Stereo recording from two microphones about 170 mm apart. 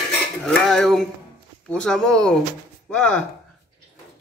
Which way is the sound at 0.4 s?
5° left (ahead or behind).